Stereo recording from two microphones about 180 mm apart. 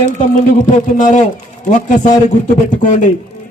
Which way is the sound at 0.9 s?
45° left (ahead or behind).